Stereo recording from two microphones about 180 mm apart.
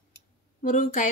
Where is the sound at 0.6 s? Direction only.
45° left (ahead or behind).